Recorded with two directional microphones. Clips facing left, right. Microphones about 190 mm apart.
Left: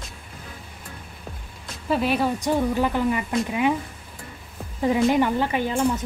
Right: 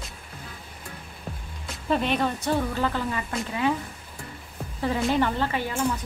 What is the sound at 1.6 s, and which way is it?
Speech, 5° left (ahead or behind).